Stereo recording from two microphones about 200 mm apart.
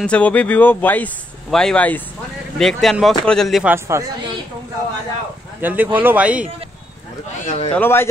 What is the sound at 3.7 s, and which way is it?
Speech, 15° right (ahead or behind).